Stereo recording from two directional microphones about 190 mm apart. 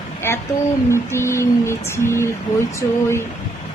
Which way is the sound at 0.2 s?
15° left (ahead or behind).